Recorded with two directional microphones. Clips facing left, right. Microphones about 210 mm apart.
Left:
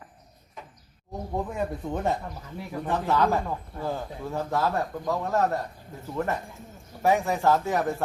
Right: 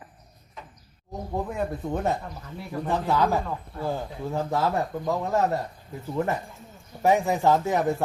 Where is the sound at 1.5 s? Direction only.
5° right (ahead or behind).